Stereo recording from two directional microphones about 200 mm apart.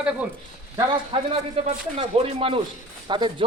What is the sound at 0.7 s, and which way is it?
Speech, 20° right (ahead or behind).